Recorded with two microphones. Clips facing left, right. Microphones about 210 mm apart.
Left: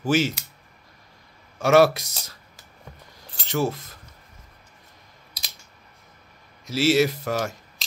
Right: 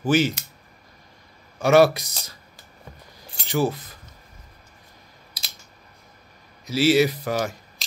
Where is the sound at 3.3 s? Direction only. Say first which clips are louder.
Right 2 dB; 5° right (ahead or behind).